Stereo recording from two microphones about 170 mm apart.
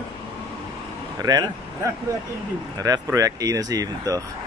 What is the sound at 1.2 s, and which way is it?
Speech, 20° right (ahead or behind).